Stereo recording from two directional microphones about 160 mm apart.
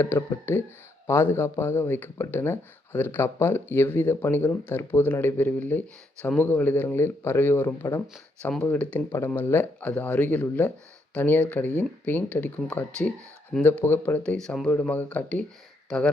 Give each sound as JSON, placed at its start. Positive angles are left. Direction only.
{"t": 0.0, "sound": "speech", "side_deg": 15}
{"t": 8.0, "sound": "speech", "side_deg": 5}